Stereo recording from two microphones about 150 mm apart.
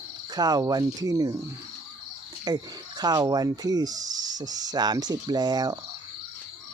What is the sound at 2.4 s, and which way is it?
Speech, 25° right (ahead or behind).